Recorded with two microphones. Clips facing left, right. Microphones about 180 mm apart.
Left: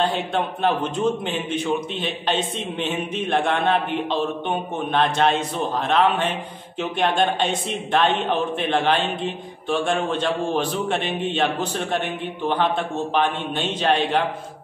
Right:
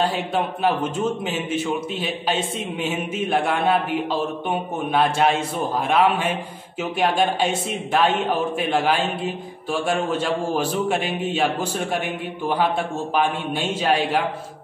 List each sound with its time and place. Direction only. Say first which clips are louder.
0.0 s a man's voice: even; 5° right (ahead or behind)